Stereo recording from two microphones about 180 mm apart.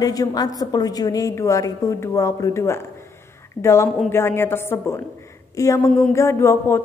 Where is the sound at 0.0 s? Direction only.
20° left (ahead or behind).